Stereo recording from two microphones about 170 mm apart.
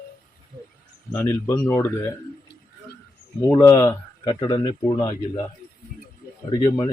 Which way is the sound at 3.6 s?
20° left (ahead or behind).